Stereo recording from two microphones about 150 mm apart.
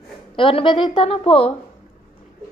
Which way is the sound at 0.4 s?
35° left (ahead or behind).